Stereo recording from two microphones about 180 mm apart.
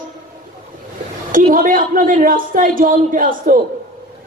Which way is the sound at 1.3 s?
50° right (ahead or behind).